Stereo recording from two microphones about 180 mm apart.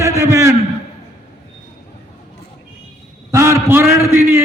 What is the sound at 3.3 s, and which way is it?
A man's voice, 15° right (ahead or behind).